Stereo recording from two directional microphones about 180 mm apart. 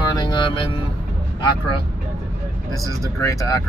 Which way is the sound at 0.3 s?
25° left (ahead or behind).